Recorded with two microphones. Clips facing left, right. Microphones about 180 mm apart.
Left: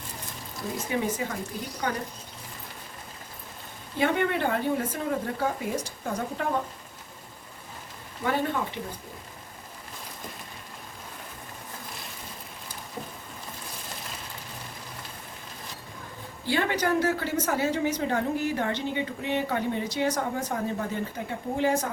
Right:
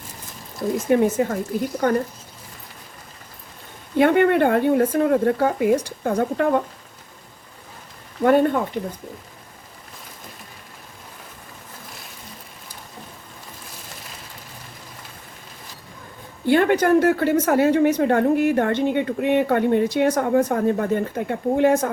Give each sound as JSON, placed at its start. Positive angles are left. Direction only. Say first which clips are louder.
{"t": 0.9, "sound": "speech", "louder": "right 11 dB", "side_deg": -50}
{"t": 3.9, "sound": "a woman's voice", "louder": "right 10 dB", "side_deg": -60}
{"t": 8.2, "sound": "speech", "louder": "right 11 dB", "side_deg": -55}
{"t": 16.5, "sound": "a woman's voice", "louder": "right 10 dB", "side_deg": -55}